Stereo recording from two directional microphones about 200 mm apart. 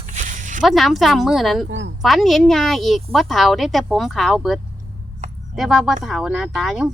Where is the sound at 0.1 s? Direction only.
40° right (ahead or behind).